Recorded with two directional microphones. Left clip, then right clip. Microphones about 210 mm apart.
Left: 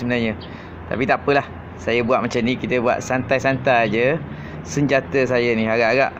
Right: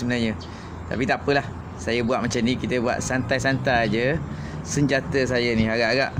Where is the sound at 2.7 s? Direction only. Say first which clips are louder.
Left 7 dB; centre (ahead or behind).